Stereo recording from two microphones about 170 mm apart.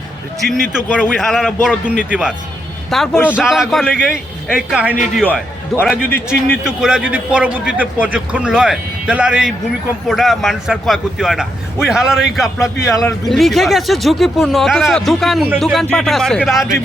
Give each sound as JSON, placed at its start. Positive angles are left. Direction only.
{"t": 0.6, "sound": "a man's voice", "side_deg": -5}
{"t": 12.9, "sound": "a man's voice", "side_deg": 20}
{"t": 13.2, "sound": "speech", "side_deg": 0}